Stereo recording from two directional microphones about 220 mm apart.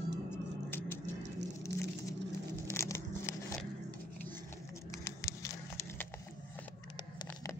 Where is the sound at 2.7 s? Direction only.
10° left (ahead or behind).